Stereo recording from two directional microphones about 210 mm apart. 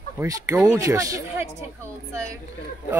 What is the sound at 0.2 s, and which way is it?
Speech, 15° right (ahead or behind).